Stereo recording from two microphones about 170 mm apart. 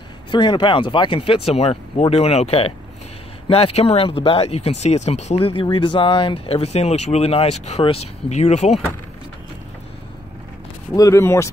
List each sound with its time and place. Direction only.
0.3 s speech: 25° left (ahead or behind)
11.0 s speech: 15° left (ahead or behind)